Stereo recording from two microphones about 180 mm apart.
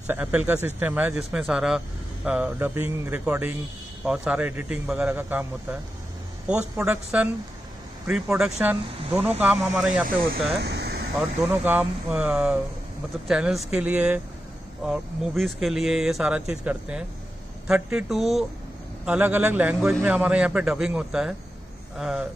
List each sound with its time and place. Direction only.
0.0 s a man's voice: 10° right (ahead or behind)
6.8 s speech: 5° right (ahead or behind)
10.6 s a sound: 70° right (ahead or behind)
11.1 s a man's voice: 10° right (ahead or behind)